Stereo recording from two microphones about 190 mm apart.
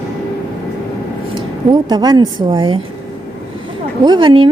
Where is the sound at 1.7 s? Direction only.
20° right (ahead or behind).